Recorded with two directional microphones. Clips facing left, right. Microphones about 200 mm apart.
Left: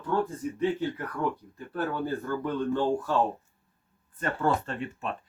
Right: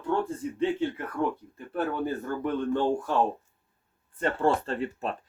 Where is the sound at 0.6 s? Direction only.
25° right (ahead or behind).